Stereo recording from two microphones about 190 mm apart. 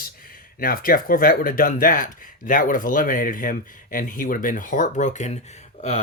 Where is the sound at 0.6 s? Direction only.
50° left (ahead or behind).